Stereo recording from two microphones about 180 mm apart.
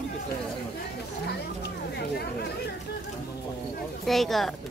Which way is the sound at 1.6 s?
60° left (ahead or behind).